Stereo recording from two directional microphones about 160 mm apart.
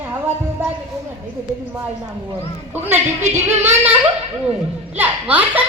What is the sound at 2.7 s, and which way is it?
A child's voice, 15° right (ahead or behind).